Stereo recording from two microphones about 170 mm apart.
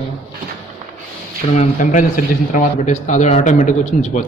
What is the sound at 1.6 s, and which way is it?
A man's voice, 50° left (ahead or behind).